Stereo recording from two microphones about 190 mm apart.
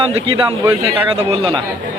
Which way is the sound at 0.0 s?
30° right (ahead or behind).